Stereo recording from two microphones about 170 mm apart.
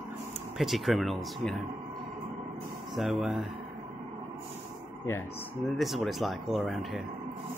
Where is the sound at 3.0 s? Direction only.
Centre (ahead or behind).